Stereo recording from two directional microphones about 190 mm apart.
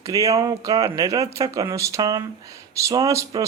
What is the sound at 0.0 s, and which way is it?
Speech, 15° right (ahead or behind).